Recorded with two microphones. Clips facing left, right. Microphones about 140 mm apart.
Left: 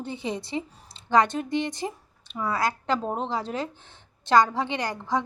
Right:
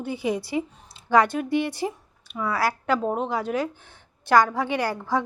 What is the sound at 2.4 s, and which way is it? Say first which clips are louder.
Speech: right 2 dB; 20° left (ahead or behind).